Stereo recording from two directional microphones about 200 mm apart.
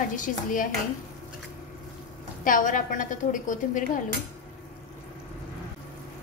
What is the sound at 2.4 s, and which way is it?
A woman's voice, 40° left (ahead or behind).